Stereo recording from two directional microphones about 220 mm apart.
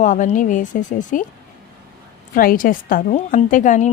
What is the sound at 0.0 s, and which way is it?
A woman's voice, 35° left (ahead or behind).